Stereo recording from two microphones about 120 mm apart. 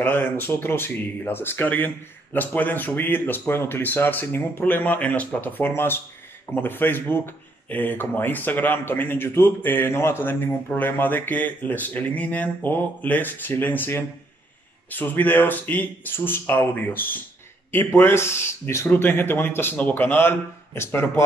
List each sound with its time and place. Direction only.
0.0 s speech: 15° left (ahead or behind)